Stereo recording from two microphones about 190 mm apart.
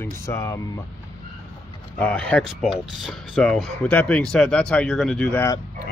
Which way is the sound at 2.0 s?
5° left (ahead or behind).